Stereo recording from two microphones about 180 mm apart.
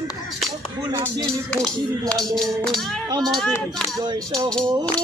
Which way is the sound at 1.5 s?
5° left (ahead or behind).